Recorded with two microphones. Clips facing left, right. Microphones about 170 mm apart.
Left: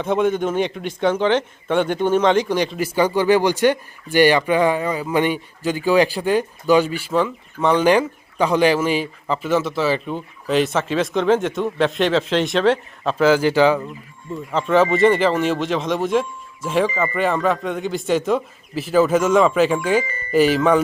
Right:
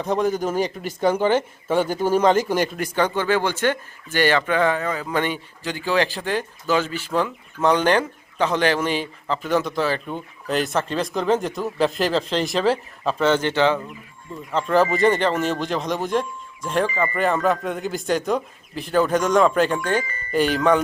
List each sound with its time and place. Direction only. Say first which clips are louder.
0.0 s speech: left 3 dB; centre (ahead or behind)
2.7 s speech: left 4 dB; 5° left (ahead or behind)
7.1 s speech: left 3 dB; centre (ahead or behind)